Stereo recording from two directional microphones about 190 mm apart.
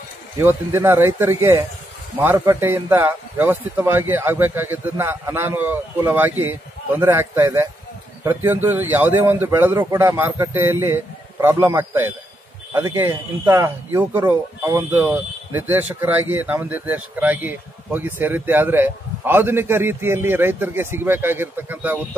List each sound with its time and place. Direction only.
0.4 s speech: 10° right (ahead or behind)